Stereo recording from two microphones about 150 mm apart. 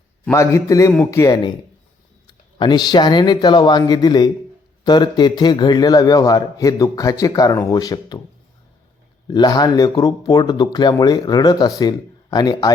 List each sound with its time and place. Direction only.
0.3 s speech: 20° left (ahead or behind)
9.2 s speech: 25° left (ahead or behind)